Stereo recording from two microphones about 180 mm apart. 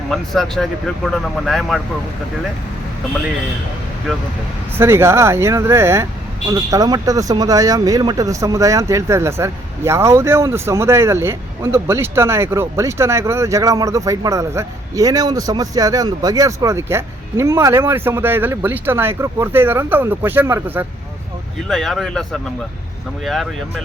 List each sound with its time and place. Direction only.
0.1 s speech: 5° left (ahead or behind)
4.8 s speech: 15° right (ahead or behind)
21.7 s speech: centre (ahead or behind)